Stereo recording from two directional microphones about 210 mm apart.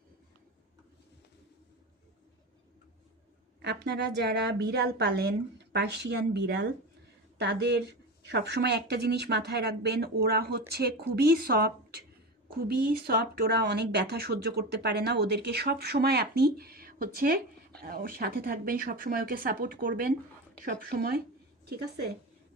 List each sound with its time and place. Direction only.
3.6 s speech: 55° right (ahead or behind)